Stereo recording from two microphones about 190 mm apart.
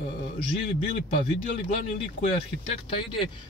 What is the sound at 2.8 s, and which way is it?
Speech, 25° left (ahead or behind).